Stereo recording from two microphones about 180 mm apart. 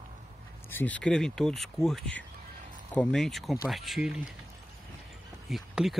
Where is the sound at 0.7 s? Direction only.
10° left (ahead or behind).